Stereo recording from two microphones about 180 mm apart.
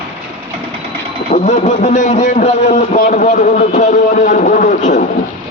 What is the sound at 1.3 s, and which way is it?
A man's voice, 45° left (ahead or behind).